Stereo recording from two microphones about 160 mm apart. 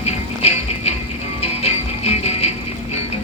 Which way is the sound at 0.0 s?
40° left (ahead or behind).